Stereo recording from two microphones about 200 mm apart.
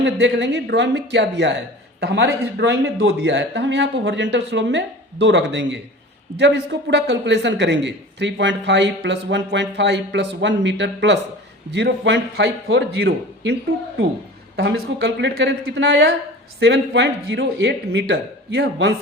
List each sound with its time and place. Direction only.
0.0 s a man's voice: 60° right (ahead or behind)
14.5 s a man's voice: 65° right (ahead or behind)